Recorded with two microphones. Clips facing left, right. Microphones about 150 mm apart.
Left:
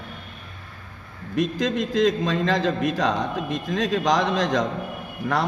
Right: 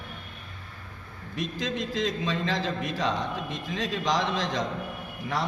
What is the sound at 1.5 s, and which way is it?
A man's voice, 50° left (ahead or behind).